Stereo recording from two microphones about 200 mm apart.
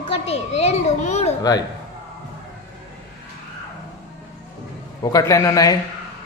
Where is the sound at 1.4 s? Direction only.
20° left (ahead or behind).